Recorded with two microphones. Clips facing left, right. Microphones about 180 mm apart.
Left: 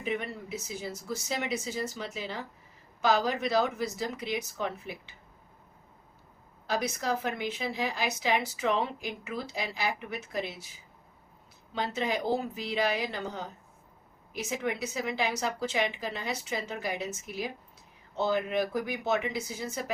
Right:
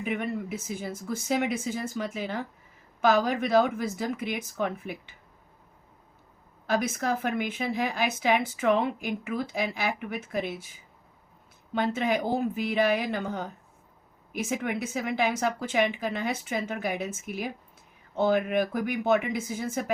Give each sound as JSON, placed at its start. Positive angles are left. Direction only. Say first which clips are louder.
{"t": 0.0, "sound": "a woman's voice", "louder": "right 4 dB", "side_deg": -55}
{"t": 6.7, "sound": "a woman's voice", "louder": "right 3 dB", "side_deg": -55}
{"t": 11.9, "sound": "a woman's voice", "louder": "even", "side_deg": -55}